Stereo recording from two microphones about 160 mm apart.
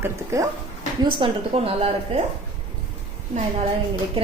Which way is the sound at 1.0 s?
35° right (ahead or behind).